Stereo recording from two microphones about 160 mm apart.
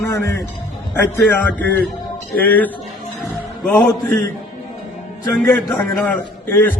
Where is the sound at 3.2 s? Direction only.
5° left (ahead or behind).